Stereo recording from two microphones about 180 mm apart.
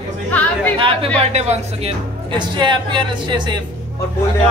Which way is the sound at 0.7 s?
35° right (ahead or behind).